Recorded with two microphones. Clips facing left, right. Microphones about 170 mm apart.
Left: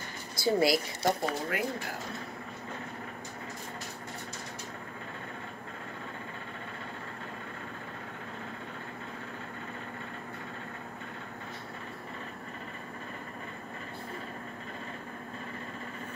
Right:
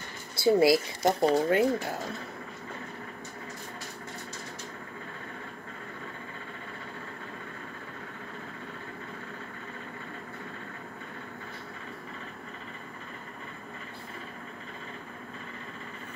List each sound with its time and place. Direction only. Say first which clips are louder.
0.4 s speech: right 5 dB; 25° right (ahead or behind)